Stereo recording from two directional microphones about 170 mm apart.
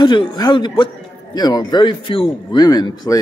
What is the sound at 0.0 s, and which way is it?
A woman's voice, 25° left (ahead or behind).